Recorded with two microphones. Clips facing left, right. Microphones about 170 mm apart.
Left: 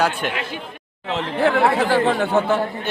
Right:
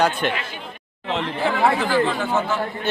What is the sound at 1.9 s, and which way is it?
Speech, 60° left (ahead or behind).